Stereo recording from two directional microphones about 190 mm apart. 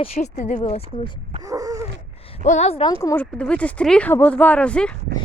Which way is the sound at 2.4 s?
35° left (ahead or behind).